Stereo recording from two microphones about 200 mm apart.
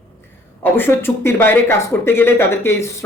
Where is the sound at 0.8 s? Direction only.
10° left (ahead or behind).